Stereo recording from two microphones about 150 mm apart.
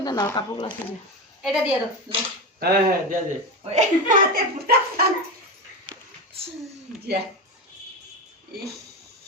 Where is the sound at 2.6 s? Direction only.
90° right.